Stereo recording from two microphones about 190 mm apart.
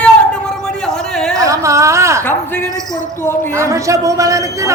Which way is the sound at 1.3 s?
15° right (ahead or behind).